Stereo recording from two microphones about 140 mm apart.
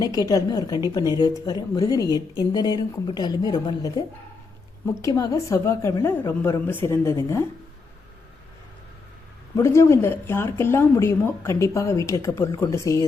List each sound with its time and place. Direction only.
0.3 s speech: 25° left (ahead or behind)
5.0 s speech: 25° left (ahead or behind)
9.6 s speech: 20° left (ahead or behind)